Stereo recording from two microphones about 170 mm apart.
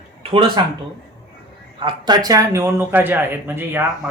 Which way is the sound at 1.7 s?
25° right (ahead or behind).